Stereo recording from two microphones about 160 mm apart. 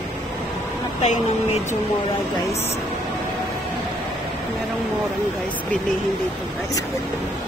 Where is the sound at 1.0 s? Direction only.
40° left (ahead or behind).